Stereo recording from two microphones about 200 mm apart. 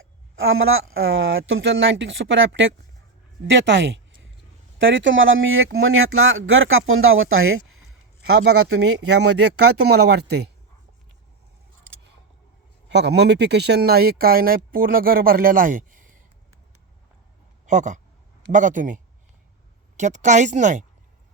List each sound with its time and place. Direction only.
0.3 s speech: 85° right
8.3 s speech: 75° right (ahead or behind)
9.9 s speech: 55° right (ahead or behind)
12.9 s speech: 60° right (ahead or behind); by 16.1 s 40° right (ahead or behind)
17.7 s a woman's voice: 35° right (ahead or behind)